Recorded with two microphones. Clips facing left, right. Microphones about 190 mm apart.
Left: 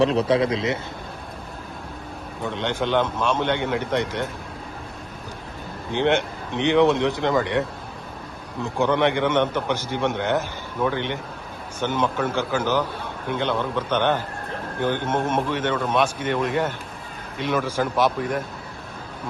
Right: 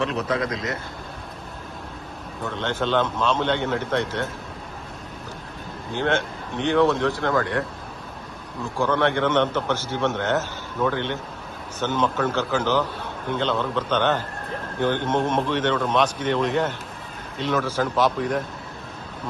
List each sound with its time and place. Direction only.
0.0 s speech: 30° left (ahead or behind)
2.4 s a man's voice: 15° left (ahead or behind)
5.9 s a man's voice: 20° left (ahead or behind)
8.6 s a man's voice: 20° left (ahead or behind)